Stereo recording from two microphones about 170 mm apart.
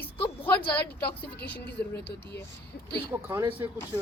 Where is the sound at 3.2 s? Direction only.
15° right (ahead or behind).